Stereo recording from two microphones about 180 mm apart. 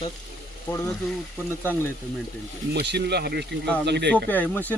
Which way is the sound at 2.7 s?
70° right (ahead or behind).